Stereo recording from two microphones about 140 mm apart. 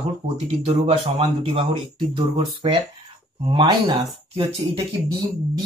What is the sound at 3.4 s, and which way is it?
Speech, 35° right (ahead or behind).